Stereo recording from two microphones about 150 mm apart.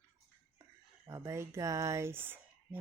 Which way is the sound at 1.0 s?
20° right (ahead or behind).